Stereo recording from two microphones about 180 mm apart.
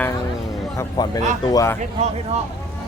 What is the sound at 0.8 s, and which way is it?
A man's voice, 20° left (ahead or behind).